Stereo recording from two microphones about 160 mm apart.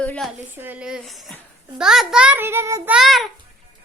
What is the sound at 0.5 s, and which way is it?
A child's voice, 10° right (ahead or behind).